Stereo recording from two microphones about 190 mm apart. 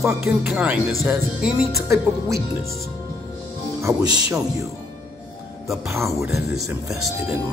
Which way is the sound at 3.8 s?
20° right (ahead or behind).